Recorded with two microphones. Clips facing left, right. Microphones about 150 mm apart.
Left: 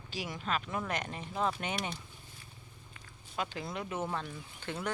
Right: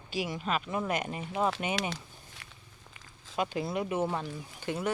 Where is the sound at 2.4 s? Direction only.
75° right (ahead or behind).